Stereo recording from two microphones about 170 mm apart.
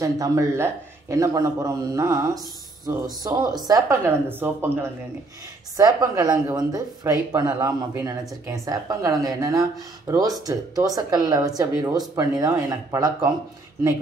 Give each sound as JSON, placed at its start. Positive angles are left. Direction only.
{"t": 0.0, "sound": "speech", "side_deg": -20}